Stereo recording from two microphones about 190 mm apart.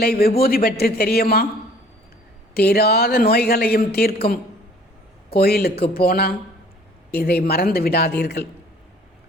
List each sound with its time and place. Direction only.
0.0 s a woman's voice: 55° left (ahead or behind)
2.6 s a woman's voice: 55° left (ahead or behind)